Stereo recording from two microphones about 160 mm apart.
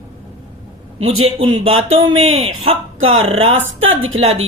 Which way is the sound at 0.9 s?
40° right (ahead or behind).